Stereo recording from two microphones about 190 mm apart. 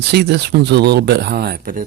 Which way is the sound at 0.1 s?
60° right (ahead or behind).